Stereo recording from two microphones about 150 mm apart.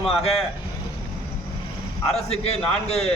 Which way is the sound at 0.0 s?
40° left (ahead or behind).